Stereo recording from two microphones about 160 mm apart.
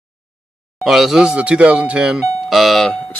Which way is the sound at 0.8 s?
Centre (ahead or behind).